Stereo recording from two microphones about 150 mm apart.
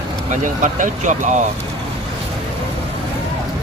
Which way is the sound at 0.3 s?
60° right (ahead or behind).